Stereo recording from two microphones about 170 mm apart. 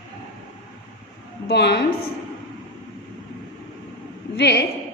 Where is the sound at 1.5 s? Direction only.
75° left (ahead or behind).